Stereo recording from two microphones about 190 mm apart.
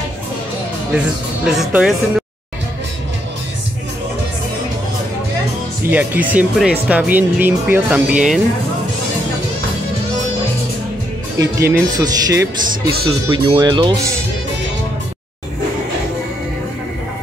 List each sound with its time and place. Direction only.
0.9 s speech: 5° right (ahead or behind)
5.9 s speech: 10° right (ahead or behind)
11.3 s speech: 15° right (ahead or behind)